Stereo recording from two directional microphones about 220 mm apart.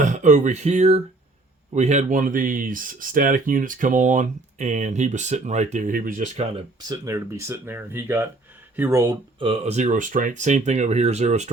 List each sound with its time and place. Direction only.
0.0 s speech: 35° right (ahead or behind)
6.8 s speech: 15° right (ahead or behind)